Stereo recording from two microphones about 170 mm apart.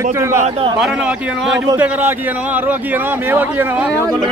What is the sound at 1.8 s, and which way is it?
Speech, 10° right (ahead or behind).